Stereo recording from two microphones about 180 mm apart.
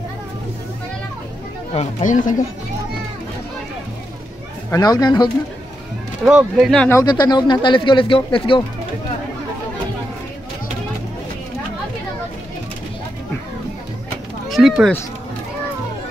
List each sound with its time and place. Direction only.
1.7 s speech: 40° left (ahead or behind)
4.6 s speech: 20° left (ahead or behind)
6.2 s speech: 5° right (ahead or behind)
6.9 s speech: 20° left (ahead or behind)
14.5 s speech: centre (ahead or behind)